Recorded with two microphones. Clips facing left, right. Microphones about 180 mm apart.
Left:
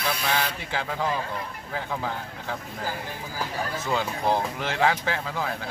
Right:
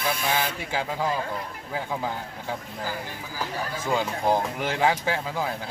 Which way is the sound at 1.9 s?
15° right (ahead or behind).